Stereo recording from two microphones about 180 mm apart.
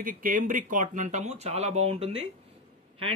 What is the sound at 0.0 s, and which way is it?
Speech, 50° right (ahead or behind).